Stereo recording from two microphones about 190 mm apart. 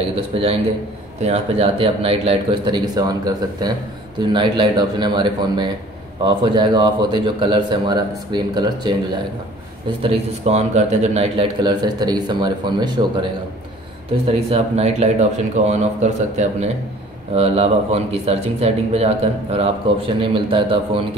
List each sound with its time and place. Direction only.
0.1 s a man's voice: 30° right (ahead or behind)
10.0 s a man's voice: 30° right (ahead or behind)
14.2 s speech: 30° right (ahead or behind)